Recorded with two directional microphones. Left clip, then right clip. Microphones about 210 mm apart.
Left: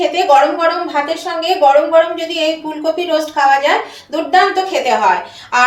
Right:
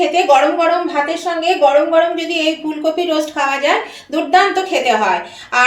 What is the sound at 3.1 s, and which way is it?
A woman's voice, 35° right (ahead or behind).